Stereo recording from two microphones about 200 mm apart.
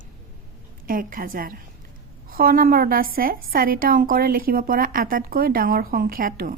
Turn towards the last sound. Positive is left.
turn(degrees=-45)  # may be behind; listen again after turning